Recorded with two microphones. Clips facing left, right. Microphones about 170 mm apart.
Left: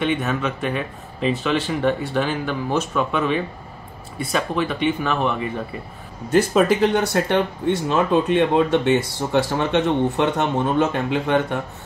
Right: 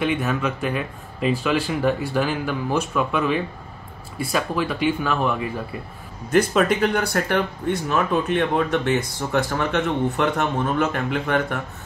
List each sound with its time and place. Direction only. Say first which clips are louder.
0.0 s speech: left 1 dB; centre (ahead or behind)
6.8 s speech: left 3 dB; 25° left (ahead or behind)